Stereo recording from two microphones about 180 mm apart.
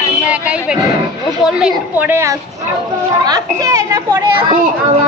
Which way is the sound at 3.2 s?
20° right (ahead or behind).